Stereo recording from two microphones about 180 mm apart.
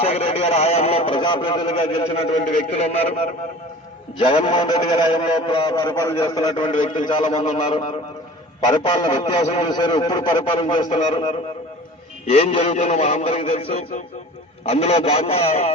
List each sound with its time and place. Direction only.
0.0 s a man's voice: 35° left (ahead or behind)
4.2 s a man's voice: 30° left (ahead or behind)
7.0 s a man's voice: 40° left (ahead or behind)
8.6 s a man's voice: 25° left (ahead or behind)
9.4 s a man's voice: 35° left (ahead or behind)
9.6 s a man's voice: 25° left (ahead or behind)